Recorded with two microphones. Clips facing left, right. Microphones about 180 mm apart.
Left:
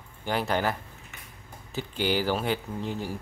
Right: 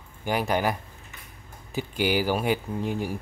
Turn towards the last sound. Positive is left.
turn(degrees=-15)  # may be behind; listen again after turning